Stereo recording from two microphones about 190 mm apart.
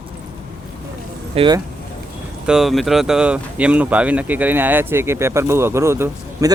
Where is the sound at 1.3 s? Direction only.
25° right (ahead or behind).